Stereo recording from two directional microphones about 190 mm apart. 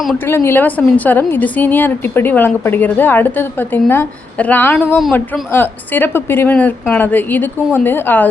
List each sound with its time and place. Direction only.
0.3 s a woman's voice: 15° left (ahead or behind)